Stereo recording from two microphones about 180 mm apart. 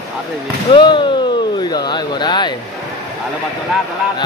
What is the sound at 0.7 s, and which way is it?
Speech, 25° left (ahead or behind).